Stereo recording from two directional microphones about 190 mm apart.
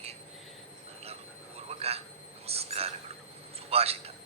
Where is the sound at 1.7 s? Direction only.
30° right (ahead or behind).